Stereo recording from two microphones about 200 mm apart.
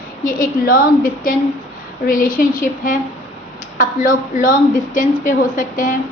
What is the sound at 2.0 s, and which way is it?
A woman's voice, 45° left (ahead or behind).